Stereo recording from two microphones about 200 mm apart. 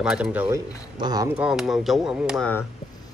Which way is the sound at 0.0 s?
5° right (ahead or behind).